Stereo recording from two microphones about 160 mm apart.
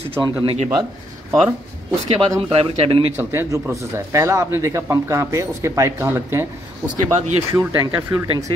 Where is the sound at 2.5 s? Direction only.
35° right (ahead or behind).